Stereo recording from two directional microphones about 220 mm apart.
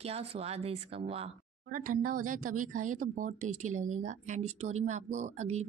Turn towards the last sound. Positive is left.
turn(degrees=-30)  # may be behind; listen again after turning